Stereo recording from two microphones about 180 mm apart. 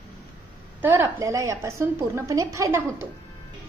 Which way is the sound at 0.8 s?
10° right (ahead or behind).